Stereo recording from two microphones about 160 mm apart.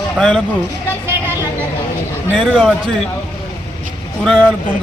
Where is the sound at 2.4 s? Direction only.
Centre (ahead or behind).